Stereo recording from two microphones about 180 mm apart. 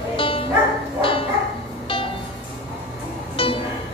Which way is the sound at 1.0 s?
30° left (ahead or behind).